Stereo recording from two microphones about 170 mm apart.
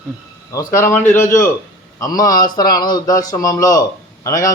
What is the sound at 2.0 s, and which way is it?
A man's voice, 20° left (ahead or behind).